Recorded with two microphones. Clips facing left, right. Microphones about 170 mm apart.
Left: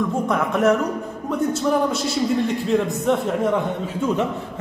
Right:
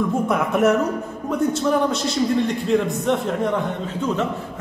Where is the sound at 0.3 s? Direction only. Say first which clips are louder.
Even; 5° right (ahead or behind).